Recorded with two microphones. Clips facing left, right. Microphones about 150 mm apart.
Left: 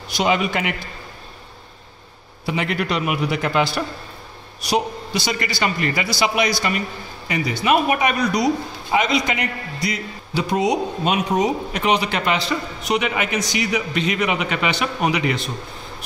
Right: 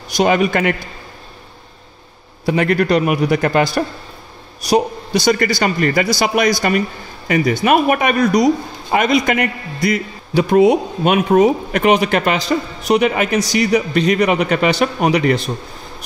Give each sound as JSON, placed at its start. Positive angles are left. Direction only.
{"t": 0.1, "sound": "a man's voice", "side_deg": -45}
{"t": 2.4, "sound": "a man's voice", "side_deg": -50}